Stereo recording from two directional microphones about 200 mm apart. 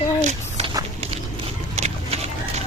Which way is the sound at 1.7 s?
30° right (ahead or behind).